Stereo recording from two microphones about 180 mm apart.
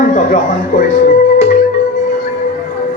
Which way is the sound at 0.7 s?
45° left (ahead or behind).